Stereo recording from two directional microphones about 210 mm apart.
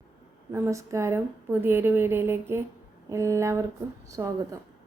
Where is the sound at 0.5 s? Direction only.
15° right (ahead or behind).